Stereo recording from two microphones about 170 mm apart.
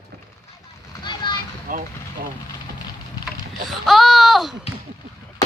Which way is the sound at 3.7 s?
Centre (ahead or behind).